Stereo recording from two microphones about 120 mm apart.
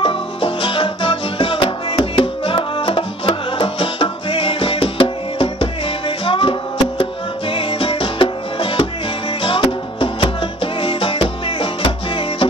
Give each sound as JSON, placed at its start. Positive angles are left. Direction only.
{"t": 0.0, "sound": "music", "side_deg": 50}